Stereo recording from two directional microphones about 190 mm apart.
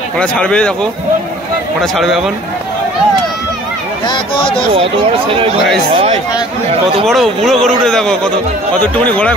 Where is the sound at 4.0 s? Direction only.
25° left (ahead or behind).